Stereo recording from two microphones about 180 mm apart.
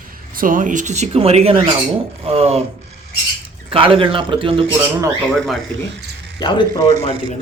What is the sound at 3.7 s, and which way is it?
Speech, 30° right (ahead or behind).